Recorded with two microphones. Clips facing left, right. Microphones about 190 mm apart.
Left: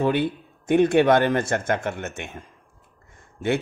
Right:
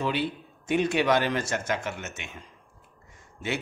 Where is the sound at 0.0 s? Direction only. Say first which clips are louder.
Left 6 dB; 55° left (ahead or behind).